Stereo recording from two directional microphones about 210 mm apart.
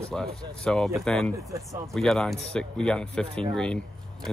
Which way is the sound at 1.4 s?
15° right (ahead or behind).